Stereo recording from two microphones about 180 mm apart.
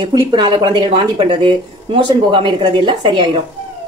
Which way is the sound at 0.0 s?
25° right (ahead or behind).